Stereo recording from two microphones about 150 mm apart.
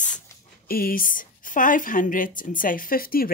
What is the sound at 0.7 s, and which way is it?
Speech, 75° left (ahead or behind).